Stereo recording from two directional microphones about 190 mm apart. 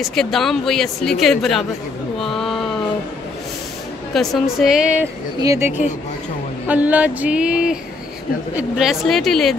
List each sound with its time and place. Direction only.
0.0 s a woman's voice: centre (ahead or behind)
2.1 s a sound: centre (ahead or behind)
4.1 s a woman's voice: centre (ahead or behind)
5.4 s music: 15° right (ahead or behind)
5.7 s speech: 40° left (ahead or behind)
6.7 s music: 10° right (ahead or behind)
8.5 s a woman's voice: centre (ahead or behind)